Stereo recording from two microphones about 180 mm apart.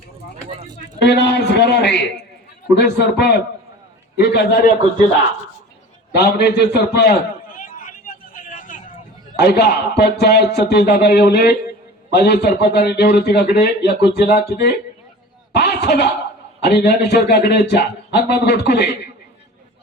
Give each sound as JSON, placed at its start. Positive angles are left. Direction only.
{"t": 0.9, "sound": "a sound", "side_deg": 70}
{"t": 2.7, "sound": "a man's voice", "side_deg": 70}
{"t": 6.1, "sound": "a man's voice", "side_deg": 65}
{"t": 7.5, "sound": "vehicle", "side_deg": 50}
{"t": 9.3, "sound": "a man's voice", "side_deg": 65}
{"t": 15.5, "sound": "a sound", "side_deg": 65}
{"t": 16.6, "sound": "a man's voice", "side_deg": 65}